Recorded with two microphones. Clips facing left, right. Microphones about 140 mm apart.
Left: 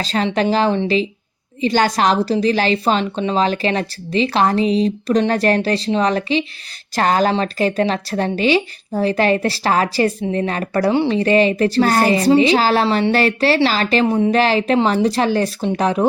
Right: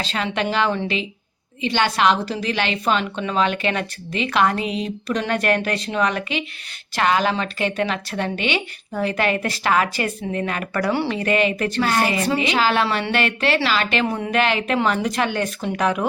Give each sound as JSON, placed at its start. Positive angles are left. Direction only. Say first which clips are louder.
{"t": 0.0, "sound": "speech", "louder": "left 6 dB", "side_deg": 40}